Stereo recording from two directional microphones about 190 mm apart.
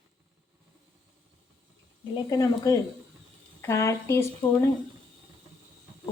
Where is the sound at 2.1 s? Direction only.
20° left (ahead or behind).